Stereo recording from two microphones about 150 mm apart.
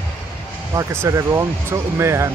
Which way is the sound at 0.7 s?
20° right (ahead or behind).